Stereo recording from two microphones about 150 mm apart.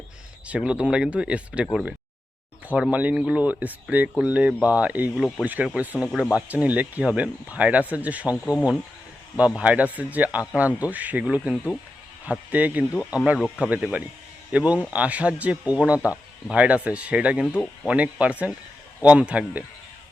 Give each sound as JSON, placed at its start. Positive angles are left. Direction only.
{"t": 0.4, "sound": "speech", "side_deg": -5}
{"t": 2.9, "sound": "speech", "side_deg": -10}
{"t": 9.4, "sound": "speech", "side_deg": -5}
{"t": 12.9, "sound": "speech", "side_deg": 20}
{"t": 13.2, "sound": "speech", "side_deg": -5}
{"t": 17.4, "sound": "speech", "side_deg": 10}
{"t": 17.8, "sound": "speech", "side_deg": -10}